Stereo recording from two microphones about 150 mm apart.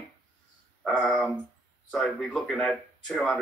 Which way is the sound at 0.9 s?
5° left (ahead or behind).